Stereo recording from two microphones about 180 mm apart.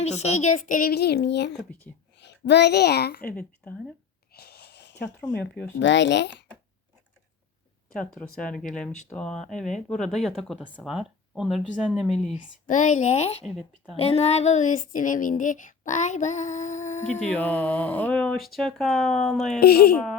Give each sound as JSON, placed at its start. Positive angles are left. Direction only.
{"t": 0.0, "sound": "a child's voice", "side_deg": 35}
{"t": 3.2, "sound": "speech", "side_deg": 10}
{"t": 4.3, "sound": "wheeze", "side_deg": 60}
{"t": 5.5, "sound": "speech", "side_deg": 80}
{"t": 7.9, "sound": "speech", "side_deg": 5}
{"t": 12.6, "sound": "speech", "side_deg": 45}
{"t": 13.4, "sound": "speech", "side_deg": 0}
{"t": 13.9, "sound": "speech", "side_deg": 35}
{"t": 17.3, "sound": "speech", "side_deg": 10}
{"t": 19.5, "sound": "speech", "side_deg": 60}